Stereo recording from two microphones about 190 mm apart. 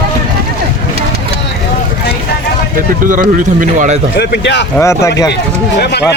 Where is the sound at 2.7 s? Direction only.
45° right (ahead or behind).